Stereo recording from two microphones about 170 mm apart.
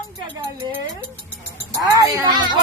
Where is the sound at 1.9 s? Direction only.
20° right (ahead or behind).